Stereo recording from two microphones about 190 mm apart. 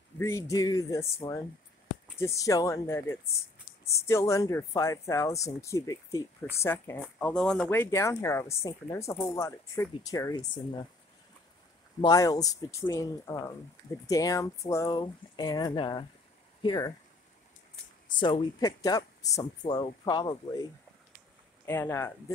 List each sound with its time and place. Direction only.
0.2 s speech: 15° left (ahead or behind)
12.0 s speech: 20° left (ahead or behind)
18.2 s speech: 20° left (ahead or behind)
21.6 s speech: 10° left (ahead or behind)